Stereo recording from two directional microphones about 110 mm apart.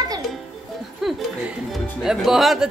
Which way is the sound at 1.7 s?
Centre (ahead or behind).